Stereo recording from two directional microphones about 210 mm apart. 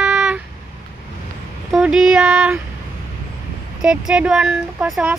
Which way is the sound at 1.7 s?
5° right (ahead or behind).